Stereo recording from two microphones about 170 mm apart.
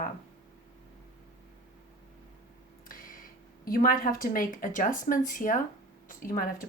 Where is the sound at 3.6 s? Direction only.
55° left (ahead or behind).